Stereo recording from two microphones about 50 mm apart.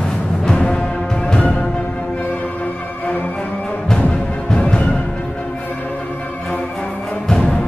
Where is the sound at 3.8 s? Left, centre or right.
Centre.